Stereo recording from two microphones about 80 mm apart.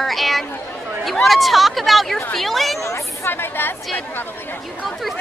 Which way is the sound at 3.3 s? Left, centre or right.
Left.